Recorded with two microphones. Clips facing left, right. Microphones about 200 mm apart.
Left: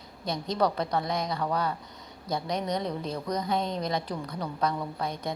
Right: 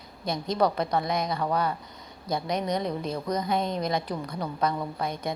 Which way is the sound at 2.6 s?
10° right (ahead or behind).